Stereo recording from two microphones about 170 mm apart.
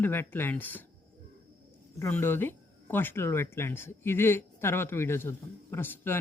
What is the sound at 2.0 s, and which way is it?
Speech, 15° left (ahead or behind).